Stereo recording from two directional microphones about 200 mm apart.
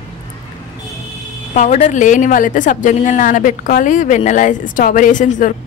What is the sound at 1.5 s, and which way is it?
A woman's voice, 40° left (ahead or behind).